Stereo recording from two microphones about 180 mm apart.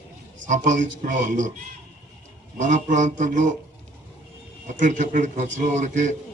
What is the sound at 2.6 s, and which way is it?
Speech, 40° right (ahead or behind).